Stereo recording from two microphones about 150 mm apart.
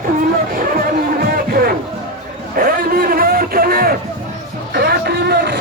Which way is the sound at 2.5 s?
70° right (ahead or behind).